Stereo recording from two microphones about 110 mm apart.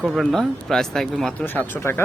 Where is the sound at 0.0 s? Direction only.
Centre (ahead or behind).